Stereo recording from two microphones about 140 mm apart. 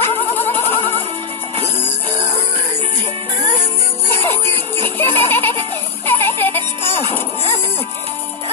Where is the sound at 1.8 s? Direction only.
45° left (ahead or behind).